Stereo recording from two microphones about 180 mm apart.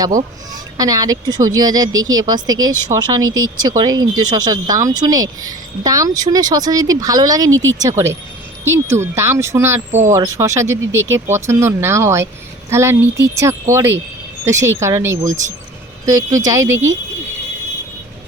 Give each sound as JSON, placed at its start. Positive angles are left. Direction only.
{"t": 0.8, "sound": "speech", "side_deg": -20}
{"t": 10.8, "sound": "speech", "side_deg": -90}
{"t": 11.1, "sound": "speech", "side_deg": -15}
{"t": 16.7, "sound": "speech", "side_deg": -90}